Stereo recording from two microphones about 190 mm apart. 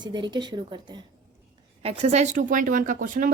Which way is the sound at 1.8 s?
30° right (ahead or behind).